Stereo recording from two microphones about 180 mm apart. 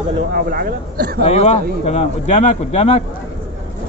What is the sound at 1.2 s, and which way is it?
Speech, 40° left (ahead or behind).